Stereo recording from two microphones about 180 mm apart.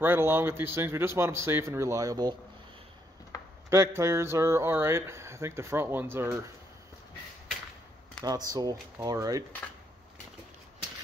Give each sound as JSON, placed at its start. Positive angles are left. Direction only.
{"t": 0.0, "sound": "speech", "side_deg": -10}
{"t": 3.7, "sound": "speech", "side_deg": -15}
{"t": 8.2, "sound": "speech", "side_deg": -20}